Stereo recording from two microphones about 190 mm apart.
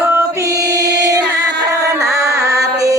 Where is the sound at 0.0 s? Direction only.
15° right (ahead or behind).